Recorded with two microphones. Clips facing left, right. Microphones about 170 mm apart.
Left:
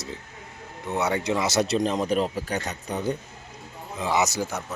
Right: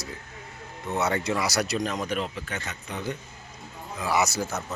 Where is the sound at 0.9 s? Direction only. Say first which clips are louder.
Left 1 dB; 15° left (ahead or behind); by 3.1 s 40° left (ahead or behind).